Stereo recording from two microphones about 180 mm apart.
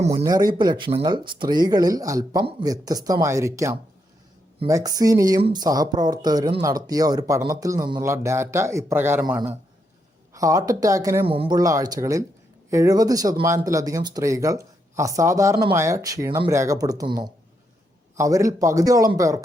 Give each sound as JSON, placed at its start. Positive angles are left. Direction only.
{"t": 0.2, "sound": "speech", "side_deg": -20}
{"t": 11.3, "sound": "speech", "side_deg": -30}
{"t": 18.2, "sound": "speech", "side_deg": -15}